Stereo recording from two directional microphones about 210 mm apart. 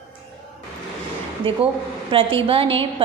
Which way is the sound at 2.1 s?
25° right (ahead or behind).